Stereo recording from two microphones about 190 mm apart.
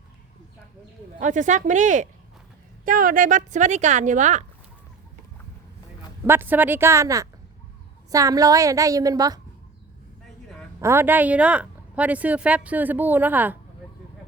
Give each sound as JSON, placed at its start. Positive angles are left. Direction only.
{"t": 1.2, "sound": "speech", "side_deg": -40}
{"t": 6.2, "sound": "a woman's voice", "side_deg": -10}
{"t": 10.8, "sound": "a woman's voice", "side_deg": -15}